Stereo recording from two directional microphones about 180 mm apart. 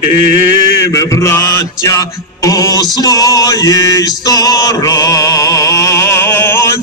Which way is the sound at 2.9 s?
20° left (ahead or behind).